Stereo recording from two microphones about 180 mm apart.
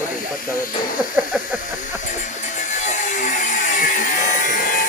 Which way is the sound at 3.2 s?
45° left (ahead or behind).